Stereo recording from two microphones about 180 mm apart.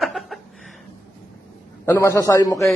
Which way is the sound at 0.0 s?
Centre (ahead or behind).